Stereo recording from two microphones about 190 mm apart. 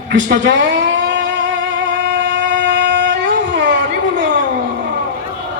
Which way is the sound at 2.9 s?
70° right (ahead or behind).